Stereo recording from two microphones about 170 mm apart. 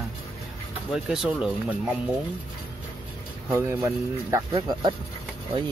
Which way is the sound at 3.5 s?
15° right (ahead or behind).